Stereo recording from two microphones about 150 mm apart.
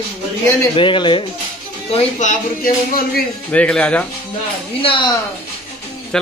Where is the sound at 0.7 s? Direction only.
35° left (ahead or behind).